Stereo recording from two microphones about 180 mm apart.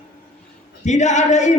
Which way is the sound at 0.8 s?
40° left (ahead or behind).